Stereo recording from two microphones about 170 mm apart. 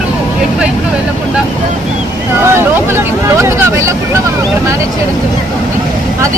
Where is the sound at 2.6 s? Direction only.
15° right (ahead or behind).